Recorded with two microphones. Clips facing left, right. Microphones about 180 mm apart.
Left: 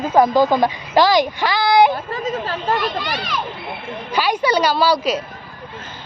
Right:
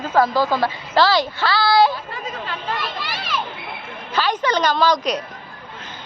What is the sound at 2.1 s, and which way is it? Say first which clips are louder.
Speech: left 6 dB; 40° left (ahead or behind).